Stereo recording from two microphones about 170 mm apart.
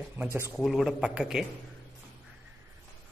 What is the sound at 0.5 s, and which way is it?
Speech, centre (ahead or behind).